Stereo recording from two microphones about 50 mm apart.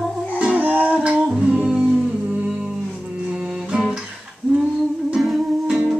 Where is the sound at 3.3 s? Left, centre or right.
Centre.